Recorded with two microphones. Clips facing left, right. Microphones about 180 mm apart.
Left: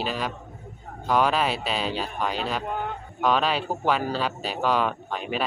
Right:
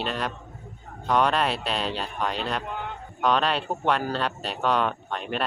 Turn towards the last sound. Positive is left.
turn(degrees=0)  # may be behind; listen again after turning